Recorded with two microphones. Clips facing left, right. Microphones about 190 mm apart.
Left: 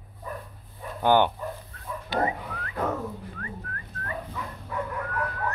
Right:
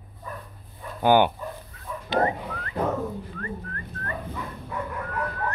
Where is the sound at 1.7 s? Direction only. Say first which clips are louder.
Even; 5° right (ahead or behind).